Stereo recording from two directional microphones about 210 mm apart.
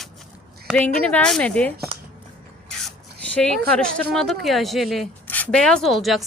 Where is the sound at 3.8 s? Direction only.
5° left (ahead or behind).